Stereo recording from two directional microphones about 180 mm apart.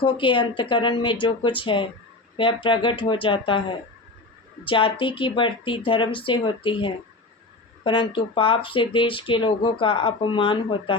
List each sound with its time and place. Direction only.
0.0 s speech: 25° left (ahead or behind)